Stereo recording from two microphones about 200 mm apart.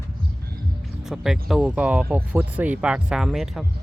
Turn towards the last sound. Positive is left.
turn(degrees=0)  # may be behind; listen again after turning